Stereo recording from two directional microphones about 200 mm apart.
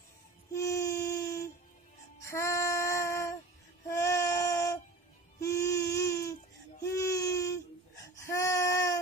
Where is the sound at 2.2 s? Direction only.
15° left (ahead or behind).